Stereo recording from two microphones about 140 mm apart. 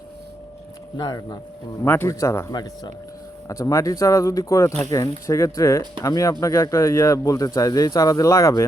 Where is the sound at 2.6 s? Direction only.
30° left (ahead or behind).